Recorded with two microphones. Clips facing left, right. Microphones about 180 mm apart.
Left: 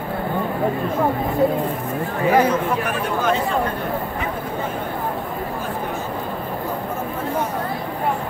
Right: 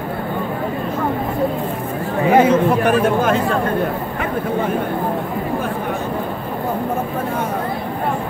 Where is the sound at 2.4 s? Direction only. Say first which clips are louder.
Right 5 dB; 25° right (ahead or behind).